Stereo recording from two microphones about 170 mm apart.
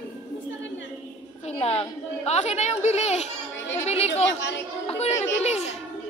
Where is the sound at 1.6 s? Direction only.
40° left (ahead or behind).